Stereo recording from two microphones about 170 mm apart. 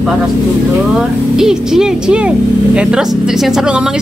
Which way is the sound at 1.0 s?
5° right (ahead or behind).